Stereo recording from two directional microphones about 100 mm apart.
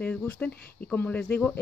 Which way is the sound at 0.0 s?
15° left (ahead or behind).